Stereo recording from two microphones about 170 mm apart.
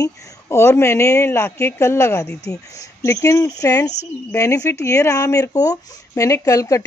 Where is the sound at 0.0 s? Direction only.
15° left (ahead or behind).